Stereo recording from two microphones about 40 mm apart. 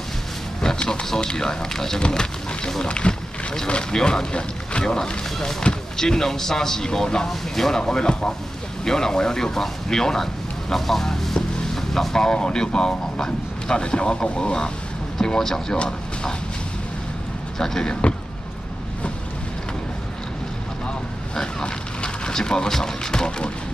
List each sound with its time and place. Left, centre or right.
0.6 s a sound: centre
1.1 s speech: centre
7.8 s speech: left
10.7 s vehicle: centre
12.4 s speech: left
15.1 s speech: centre
17.6 s speech: centre
21.6 s a sound: left